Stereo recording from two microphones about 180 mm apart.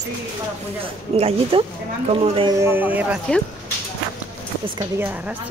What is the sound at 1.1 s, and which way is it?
Speech, 35° right (ahead or behind).